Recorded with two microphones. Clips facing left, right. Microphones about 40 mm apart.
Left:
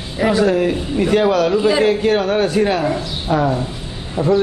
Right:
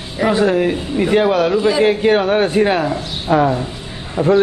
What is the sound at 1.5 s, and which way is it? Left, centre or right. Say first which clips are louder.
Speech: even; centre.